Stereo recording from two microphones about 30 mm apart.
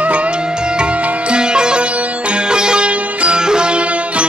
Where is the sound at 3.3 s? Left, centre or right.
Right.